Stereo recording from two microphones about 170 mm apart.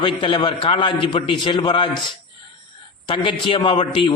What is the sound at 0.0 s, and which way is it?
A man's voice, 30° left (ahead or behind).